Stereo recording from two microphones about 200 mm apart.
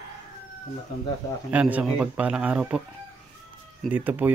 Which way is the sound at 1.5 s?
5° right (ahead or behind).